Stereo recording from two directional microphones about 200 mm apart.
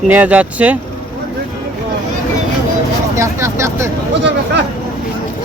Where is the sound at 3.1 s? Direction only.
15° right (ahead or behind).